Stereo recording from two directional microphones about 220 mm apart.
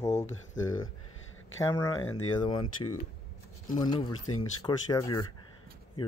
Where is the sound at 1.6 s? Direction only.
15° left (ahead or behind).